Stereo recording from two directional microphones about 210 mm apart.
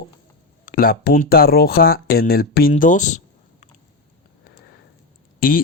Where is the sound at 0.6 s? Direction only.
40° left (ahead or behind).